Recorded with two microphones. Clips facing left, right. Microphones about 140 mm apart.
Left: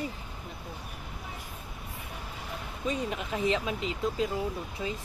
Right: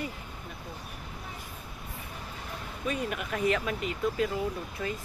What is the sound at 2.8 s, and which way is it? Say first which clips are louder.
Speech: even; 25° left (ahead or behind).